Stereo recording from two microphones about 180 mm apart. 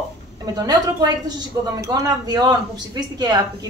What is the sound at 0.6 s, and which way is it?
Speech, 20° right (ahead or behind).